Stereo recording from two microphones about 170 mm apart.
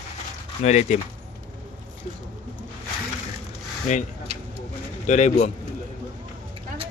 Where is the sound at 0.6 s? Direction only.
40° left (ahead or behind).